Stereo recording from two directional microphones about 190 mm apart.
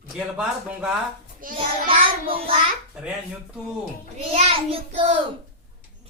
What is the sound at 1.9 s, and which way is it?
Speech, 30° right (ahead or behind).